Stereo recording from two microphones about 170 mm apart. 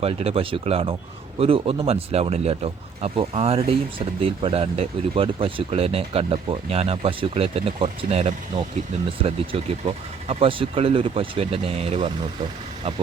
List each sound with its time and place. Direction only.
0.0 s speech: 35° right (ahead or behind)